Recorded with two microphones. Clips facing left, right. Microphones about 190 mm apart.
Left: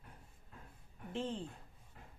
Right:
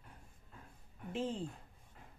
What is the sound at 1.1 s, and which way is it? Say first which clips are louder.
Speech: right 1 dB; 10° right (ahead or behind).